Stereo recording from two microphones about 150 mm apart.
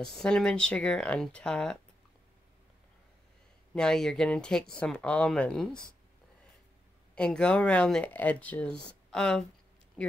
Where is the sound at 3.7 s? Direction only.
5° left (ahead or behind).